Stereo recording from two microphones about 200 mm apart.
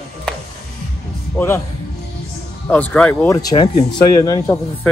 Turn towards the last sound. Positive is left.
turn(degrees=20)  # may be behind; listen again after turning